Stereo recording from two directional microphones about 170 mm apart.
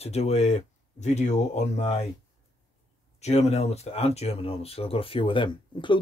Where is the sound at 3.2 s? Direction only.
40° left (ahead or behind).